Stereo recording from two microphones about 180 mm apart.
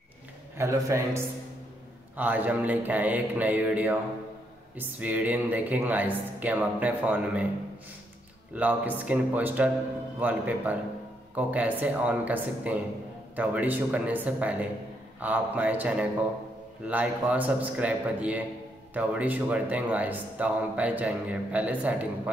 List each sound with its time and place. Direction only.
0.6 s speech: 15° right (ahead or behind)
8.5 s speech: 10° right (ahead or behind)